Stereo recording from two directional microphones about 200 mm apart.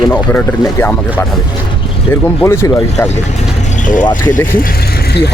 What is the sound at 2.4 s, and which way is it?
Speech, 15° left (ahead or behind).